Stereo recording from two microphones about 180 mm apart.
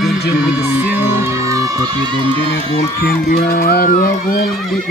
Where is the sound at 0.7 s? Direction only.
10° right (ahead or behind); by 2.8 s 30° right (ahead or behind).